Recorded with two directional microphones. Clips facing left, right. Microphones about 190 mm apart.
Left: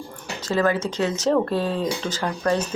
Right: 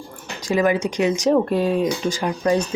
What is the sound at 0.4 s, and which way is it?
Speech, 15° right (ahead or behind).